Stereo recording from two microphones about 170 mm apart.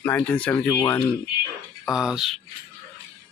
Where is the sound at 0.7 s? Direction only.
20° left (ahead or behind).